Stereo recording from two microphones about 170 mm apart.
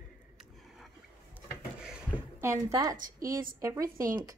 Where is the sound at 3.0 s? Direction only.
55° right (ahead or behind).